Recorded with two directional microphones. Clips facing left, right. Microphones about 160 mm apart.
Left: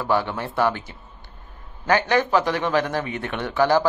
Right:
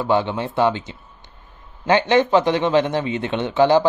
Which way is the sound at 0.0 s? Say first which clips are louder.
Right 3 dB; 20° right (ahead or behind).